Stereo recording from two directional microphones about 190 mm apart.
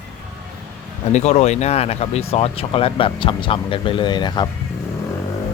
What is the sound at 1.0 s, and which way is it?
Speech, 35° left (ahead or behind).